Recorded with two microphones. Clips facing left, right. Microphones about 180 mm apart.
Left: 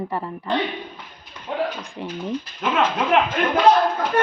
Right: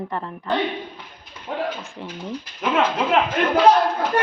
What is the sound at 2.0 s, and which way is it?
Speech, 15° left (ahead or behind).